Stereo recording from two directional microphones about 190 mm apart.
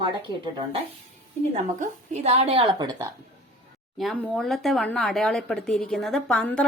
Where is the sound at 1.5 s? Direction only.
35° right (ahead or behind); by 3.0 s 20° right (ahead or behind).